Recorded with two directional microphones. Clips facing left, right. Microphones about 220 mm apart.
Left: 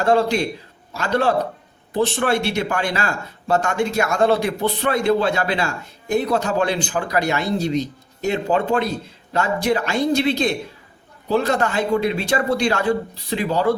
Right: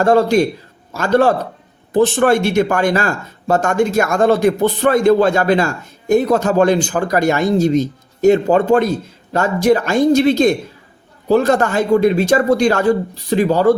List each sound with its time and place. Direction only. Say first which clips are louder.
0.0 s speech: right 6 dB; 45° right (ahead or behind)